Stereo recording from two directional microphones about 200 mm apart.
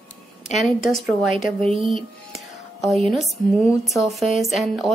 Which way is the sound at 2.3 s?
Centre (ahead or behind).